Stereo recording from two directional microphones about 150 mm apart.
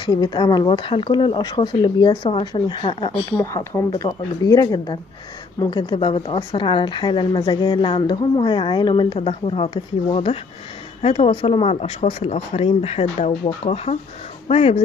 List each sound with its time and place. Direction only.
0.0 s speech: 30° left (ahead or behind)
3.3 s speech: 15° left (ahead or behind); by 14.8 s 40° left (ahead or behind)